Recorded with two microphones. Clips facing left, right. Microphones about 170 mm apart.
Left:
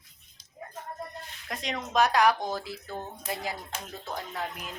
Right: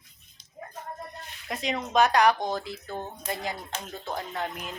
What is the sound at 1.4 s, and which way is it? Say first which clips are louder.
Speech: right 4 dB; 5° right (ahead or behind).